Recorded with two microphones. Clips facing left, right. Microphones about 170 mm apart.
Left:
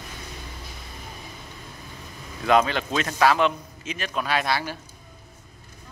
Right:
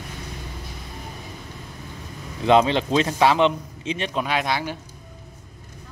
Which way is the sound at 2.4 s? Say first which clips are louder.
Right 3 dB; 25° right (ahead or behind).